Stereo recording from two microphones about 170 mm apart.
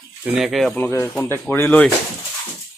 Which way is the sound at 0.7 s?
15° left (ahead or behind).